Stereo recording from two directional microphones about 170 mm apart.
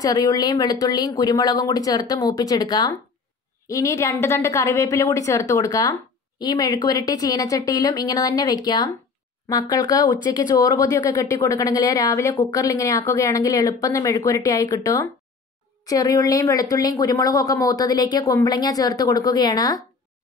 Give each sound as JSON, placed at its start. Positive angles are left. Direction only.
{"t": 0.0, "sound": "a woman's voice", "side_deg": 20}